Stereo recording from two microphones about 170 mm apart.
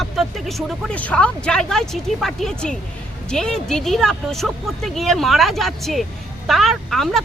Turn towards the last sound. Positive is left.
turn(degrees=0)  # may be behind; listen again after turning